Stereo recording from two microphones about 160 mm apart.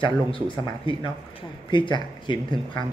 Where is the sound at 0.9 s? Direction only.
35° left (ahead or behind).